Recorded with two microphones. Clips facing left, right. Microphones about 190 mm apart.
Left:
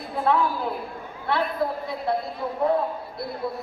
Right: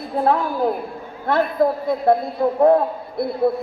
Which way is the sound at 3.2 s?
55° right (ahead or behind).